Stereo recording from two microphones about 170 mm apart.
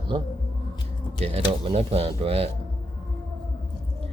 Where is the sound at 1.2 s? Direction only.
35° right (ahead or behind).